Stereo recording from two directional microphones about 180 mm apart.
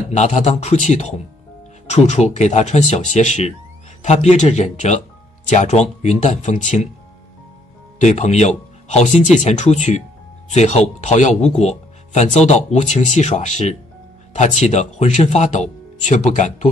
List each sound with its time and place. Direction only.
0.1 s speech: 40° left (ahead or behind)
8.0 s speech: 40° left (ahead or behind)